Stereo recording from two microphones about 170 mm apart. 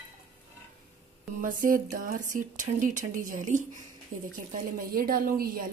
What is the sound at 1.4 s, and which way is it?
Speech, 55° right (ahead or behind).